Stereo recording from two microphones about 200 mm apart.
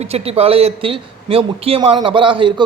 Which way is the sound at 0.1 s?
30° right (ahead or behind).